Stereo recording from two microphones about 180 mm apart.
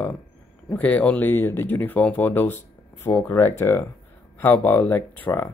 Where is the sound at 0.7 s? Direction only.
10° left (ahead or behind).